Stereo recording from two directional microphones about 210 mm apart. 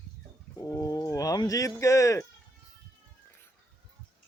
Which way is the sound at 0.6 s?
15° left (ahead or behind).